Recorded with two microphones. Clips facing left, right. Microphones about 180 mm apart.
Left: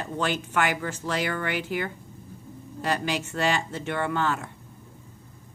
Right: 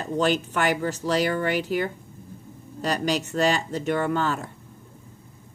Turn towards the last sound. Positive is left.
turn(degrees=-40)  # may be behind; listen again after turning